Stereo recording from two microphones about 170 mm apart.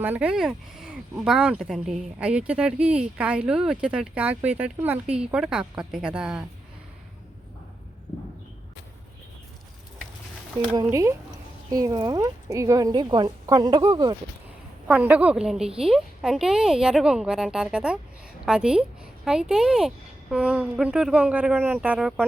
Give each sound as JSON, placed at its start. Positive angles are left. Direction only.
{"t": 0.0, "sound": "speech", "side_deg": -10}
{"t": 10.8, "sound": "a woman's voice", "side_deg": -15}
{"t": 14.8, "sound": "a woman's voice", "side_deg": -10}